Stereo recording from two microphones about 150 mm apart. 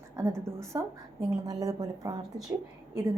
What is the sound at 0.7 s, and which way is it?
A woman's voice, 25° right (ahead or behind).